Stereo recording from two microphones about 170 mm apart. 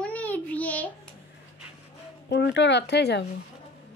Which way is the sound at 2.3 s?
85° left.